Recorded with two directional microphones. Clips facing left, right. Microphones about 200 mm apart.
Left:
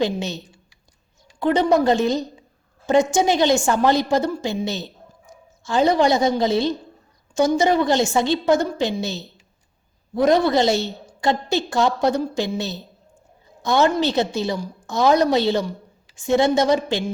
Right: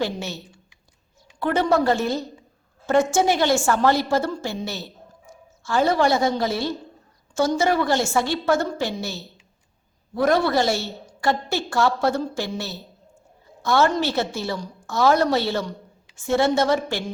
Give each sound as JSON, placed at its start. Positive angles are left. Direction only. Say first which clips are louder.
{"t": 0.2, "sound": "a woman's voice", "louder": "left 4 dB", "side_deg": 20}